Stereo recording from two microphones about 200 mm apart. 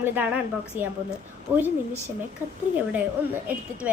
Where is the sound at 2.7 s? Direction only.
10° right (ahead or behind).